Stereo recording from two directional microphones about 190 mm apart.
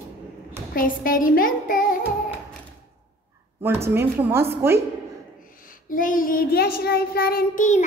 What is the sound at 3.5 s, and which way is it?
A woman's voice, 10° right (ahead or behind).